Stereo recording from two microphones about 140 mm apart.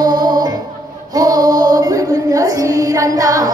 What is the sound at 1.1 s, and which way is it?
Female singing, 25° right (ahead or behind).